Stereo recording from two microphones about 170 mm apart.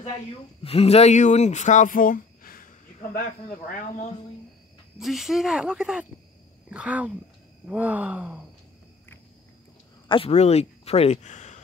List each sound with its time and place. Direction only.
0.7 s speech: 35° left (ahead or behind); by 3.7 s 60° left (ahead or behind)
4.9 s speech: centre (ahead or behind)
6.7 s groan: 5° right (ahead or behind)
10.0 s speech: 30° left (ahead or behind); by 11.6 s 45° left (ahead or behind)